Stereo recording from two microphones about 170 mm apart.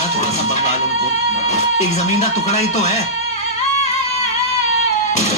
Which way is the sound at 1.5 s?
45° left (ahead or behind).